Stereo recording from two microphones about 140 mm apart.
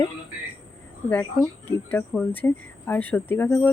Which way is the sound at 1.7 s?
10° left (ahead or behind).